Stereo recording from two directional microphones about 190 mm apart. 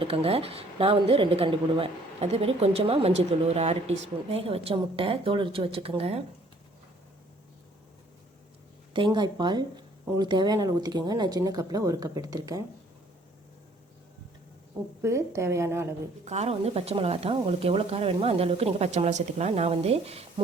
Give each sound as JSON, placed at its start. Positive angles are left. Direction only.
{"t": 0.0, "sound": "speech", "side_deg": -30}
{"t": 8.9, "sound": "speech", "side_deg": -25}
{"t": 15.0, "sound": "a woman's voice", "side_deg": -15}
{"t": 16.2, "sound": "speech", "side_deg": -35}